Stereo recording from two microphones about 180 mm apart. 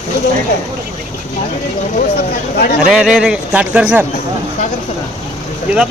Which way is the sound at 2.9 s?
5° right (ahead or behind).